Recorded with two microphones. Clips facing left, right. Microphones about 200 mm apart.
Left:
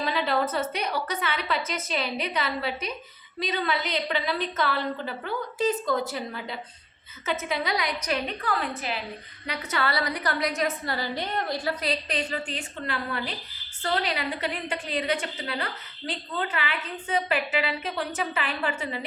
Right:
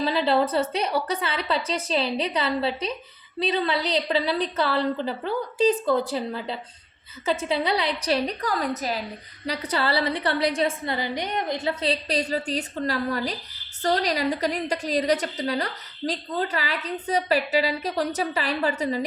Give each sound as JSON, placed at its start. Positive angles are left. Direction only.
{"t": 0.0, "sound": "a woman's voice", "side_deg": -30}